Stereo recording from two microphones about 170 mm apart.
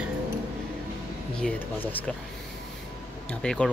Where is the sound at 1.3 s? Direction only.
10° left (ahead or behind).